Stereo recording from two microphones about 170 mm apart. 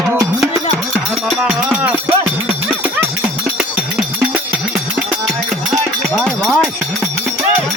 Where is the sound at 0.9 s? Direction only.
Centre (ahead or behind).